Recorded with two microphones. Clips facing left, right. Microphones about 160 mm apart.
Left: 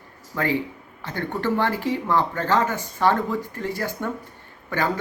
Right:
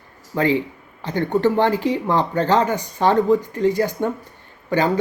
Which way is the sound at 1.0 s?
20° right (ahead or behind).